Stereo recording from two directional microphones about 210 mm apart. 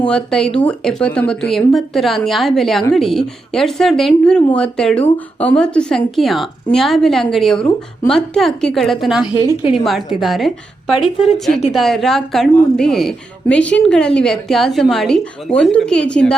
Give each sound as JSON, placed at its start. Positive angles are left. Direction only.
{"t": 0.0, "sound": "a woman's voice", "side_deg": 5}
{"t": 9.5, "sound": "a woman's voice", "side_deg": 25}
{"t": 9.8, "sound": "a woman's voice", "side_deg": 0}